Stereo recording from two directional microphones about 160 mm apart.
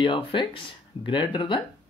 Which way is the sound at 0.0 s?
30° left (ahead or behind).